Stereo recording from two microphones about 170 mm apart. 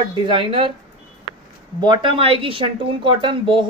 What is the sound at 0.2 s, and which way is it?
Speech, 30° right (ahead or behind).